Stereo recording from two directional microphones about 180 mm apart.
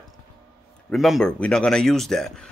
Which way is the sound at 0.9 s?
Centre (ahead or behind).